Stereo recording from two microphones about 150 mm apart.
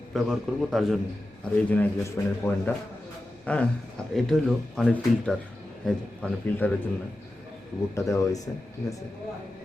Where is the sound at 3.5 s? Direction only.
10° left (ahead or behind).